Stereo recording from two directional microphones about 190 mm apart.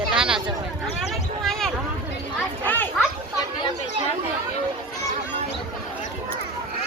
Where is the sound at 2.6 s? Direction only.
10° left (ahead or behind).